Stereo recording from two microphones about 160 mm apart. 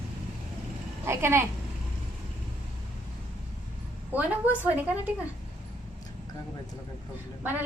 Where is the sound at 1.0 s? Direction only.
15° right (ahead or behind).